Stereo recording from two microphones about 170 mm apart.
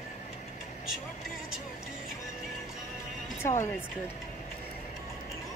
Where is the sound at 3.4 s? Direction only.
15° left (ahead or behind).